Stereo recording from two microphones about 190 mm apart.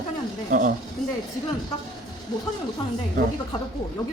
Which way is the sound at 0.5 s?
45° right (ahead or behind).